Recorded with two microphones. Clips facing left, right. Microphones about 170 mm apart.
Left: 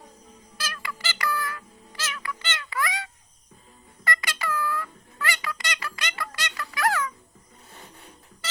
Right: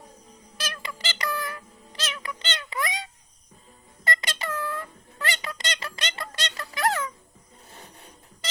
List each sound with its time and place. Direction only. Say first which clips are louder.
0.5 s squeak: even; 20° right (ahead or behind)